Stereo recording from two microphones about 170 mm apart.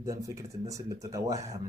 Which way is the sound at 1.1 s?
20° right (ahead or behind).